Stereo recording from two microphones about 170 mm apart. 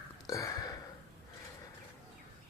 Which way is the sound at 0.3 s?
20° left (ahead or behind).